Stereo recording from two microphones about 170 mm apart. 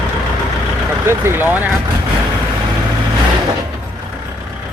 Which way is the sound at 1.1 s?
15° right (ahead or behind).